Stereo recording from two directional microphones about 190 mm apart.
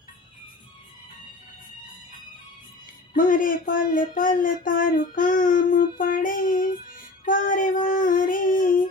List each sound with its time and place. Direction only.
3.2 s speech: 45° left (ahead or behind)
7.9 s child singing: 45° left (ahead or behind)